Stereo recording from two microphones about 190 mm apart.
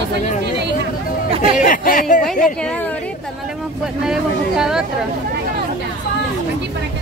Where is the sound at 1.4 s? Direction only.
45° left (ahead or behind).